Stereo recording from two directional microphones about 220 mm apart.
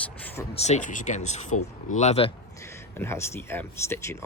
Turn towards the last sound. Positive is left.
turn(degrees=10)  # may be behind; listen again after turning